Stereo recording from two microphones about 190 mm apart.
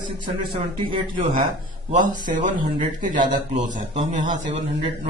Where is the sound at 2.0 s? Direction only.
25° right (ahead or behind).